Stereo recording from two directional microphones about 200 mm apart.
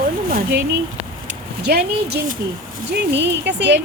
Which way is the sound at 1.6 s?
55° right (ahead or behind).